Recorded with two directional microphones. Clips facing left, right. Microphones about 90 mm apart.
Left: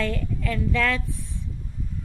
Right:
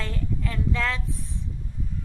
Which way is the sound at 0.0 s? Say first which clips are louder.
Left 4 dB; 25° right (ahead or behind).